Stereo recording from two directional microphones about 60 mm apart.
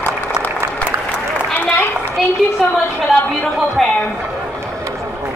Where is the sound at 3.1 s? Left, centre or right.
Centre.